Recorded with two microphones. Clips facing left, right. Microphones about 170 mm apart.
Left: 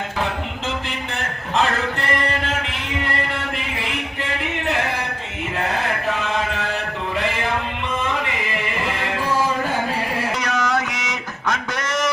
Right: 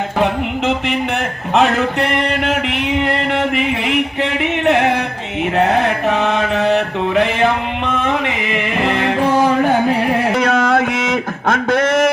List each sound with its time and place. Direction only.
0.2 s music: 65° right (ahead or behind)
1.5 s a sound: 70° right (ahead or behind)
3.3 s music: 70° right (ahead or behind)
5.5 s mantra: 70° right (ahead or behind); by 12.1 s 55° right (ahead or behind)